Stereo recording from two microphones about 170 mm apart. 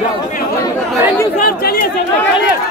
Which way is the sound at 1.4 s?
65° left (ahead or behind).